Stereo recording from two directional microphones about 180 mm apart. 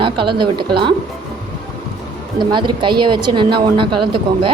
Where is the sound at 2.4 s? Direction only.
25° right (ahead or behind).